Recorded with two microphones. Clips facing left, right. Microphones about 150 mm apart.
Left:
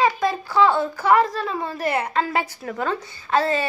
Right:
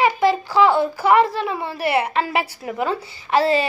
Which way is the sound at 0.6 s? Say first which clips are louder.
Right 2 dB; 10° right (ahead or behind).